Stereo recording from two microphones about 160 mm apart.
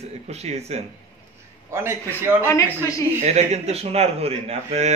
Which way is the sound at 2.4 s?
15° left (ahead or behind).